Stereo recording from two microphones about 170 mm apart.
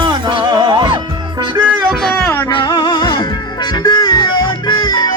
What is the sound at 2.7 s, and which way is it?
Music, 25° left (ahead or behind).